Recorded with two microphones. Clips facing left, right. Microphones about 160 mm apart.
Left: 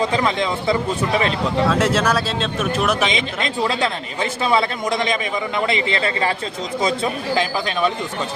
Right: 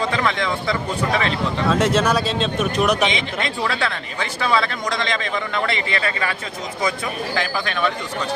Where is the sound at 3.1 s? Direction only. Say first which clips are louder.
Left 1 dB; 20° left (ahead or behind).